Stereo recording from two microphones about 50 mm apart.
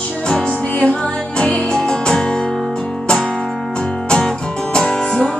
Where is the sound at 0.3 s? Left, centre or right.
Left.